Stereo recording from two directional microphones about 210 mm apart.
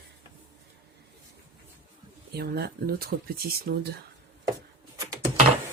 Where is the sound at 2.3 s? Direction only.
50° right (ahead or behind).